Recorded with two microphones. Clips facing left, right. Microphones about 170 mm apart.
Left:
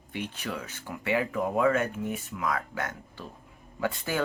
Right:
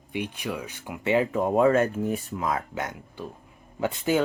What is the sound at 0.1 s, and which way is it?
Speech, 15° right (ahead or behind).